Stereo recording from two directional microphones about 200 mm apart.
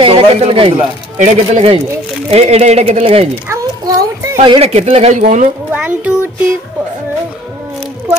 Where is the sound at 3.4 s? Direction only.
15° right (ahead or behind).